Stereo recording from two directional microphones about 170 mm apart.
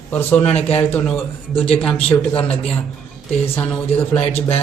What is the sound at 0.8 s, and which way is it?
Speech, 10° left (ahead or behind).